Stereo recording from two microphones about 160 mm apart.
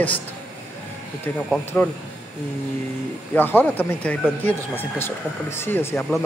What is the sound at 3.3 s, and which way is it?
A man's voice, 10° left (ahead or behind).